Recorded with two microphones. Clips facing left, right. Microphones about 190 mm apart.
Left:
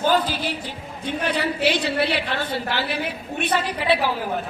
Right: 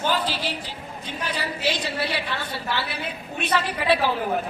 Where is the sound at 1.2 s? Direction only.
60° left (ahead or behind).